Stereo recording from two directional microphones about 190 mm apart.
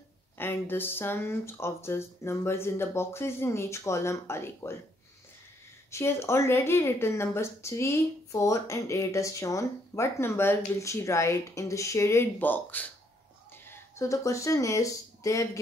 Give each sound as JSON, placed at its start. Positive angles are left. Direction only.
{"t": 0.4, "sound": "speech", "side_deg": 10}
{"t": 5.9, "sound": "speech", "side_deg": 15}